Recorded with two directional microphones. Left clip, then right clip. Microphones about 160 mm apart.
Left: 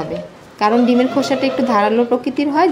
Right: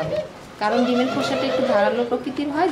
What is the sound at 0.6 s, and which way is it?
Speech, 45° left (ahead or behind).